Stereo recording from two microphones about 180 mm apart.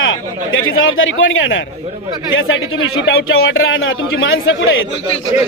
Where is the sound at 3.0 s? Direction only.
90° left.